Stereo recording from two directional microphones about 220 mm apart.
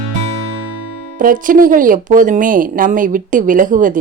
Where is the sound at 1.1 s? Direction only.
40° right (ahead or behind).